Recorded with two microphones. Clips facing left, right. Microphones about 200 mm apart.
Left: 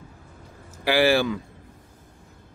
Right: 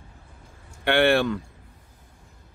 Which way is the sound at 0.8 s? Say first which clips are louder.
Even; centre (ahead or behind).